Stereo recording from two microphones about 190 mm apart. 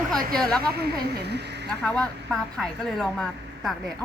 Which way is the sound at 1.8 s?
5° left (ahead or behind).